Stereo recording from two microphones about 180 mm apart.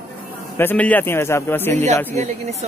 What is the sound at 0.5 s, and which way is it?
A man's voice, 10° left (ahead or behind).